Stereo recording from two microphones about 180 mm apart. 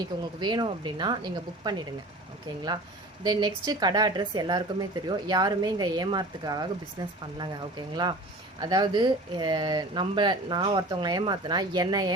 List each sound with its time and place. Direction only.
0.0 s speech: 25° right (ahead or behind)
3.2 s speech: 25° right (ahead or behind)
8.6 s speech: 25° right (ahead or behind)